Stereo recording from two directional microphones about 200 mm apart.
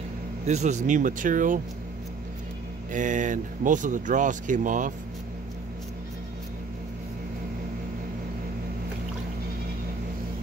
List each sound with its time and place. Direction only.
0.5 s speech: 35° right (ahead or behind)
2.9 s speech: 40° right (ahead or behind)